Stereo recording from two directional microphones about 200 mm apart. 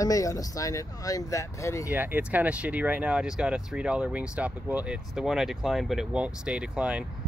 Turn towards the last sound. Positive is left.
turn(degrees=-5)  # may be behind; listen again after turning